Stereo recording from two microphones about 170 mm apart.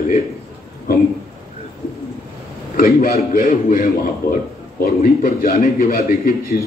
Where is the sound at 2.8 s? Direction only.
60° left (ahead or behind).